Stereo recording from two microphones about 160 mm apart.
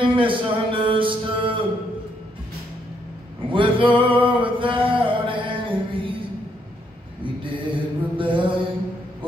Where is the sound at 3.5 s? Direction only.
30° right (ahead or behind).